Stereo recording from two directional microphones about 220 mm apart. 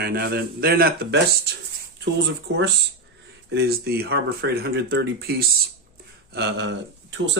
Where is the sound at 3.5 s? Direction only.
45° right (ahead or behind).